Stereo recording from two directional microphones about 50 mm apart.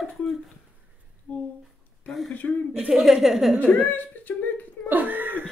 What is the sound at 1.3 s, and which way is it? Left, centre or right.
Speech, left.